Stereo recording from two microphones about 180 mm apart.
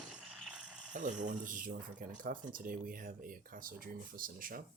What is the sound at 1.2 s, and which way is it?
Speech, 45° right (ahead or behind).